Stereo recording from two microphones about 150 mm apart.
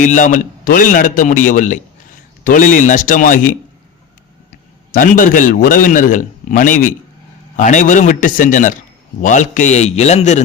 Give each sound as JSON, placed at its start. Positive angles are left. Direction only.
{"t": 0.0, "sound": "a man's voice", "side_deg": 55}
{"t": 4.9, "sound": "a man's voice", "side_deg": 65}